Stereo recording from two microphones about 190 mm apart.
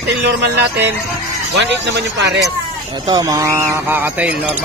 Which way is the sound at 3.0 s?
20° right (ahead or behind).